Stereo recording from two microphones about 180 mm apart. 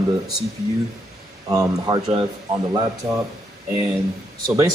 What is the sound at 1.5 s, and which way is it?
Speech, 20° right (ahead or behind).